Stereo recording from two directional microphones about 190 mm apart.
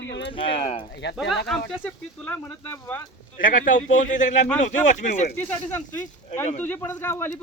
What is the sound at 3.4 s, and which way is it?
A man's voice, 45° left (ahead or behind).